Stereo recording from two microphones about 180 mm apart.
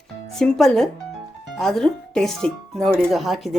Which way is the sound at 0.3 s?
Centre (ahead or behind).